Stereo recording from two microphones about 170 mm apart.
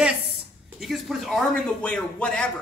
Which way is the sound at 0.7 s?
Centre (ahead or behind).